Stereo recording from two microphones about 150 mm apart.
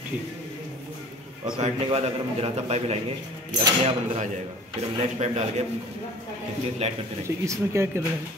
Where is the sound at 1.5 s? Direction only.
45° right (ahead or behind).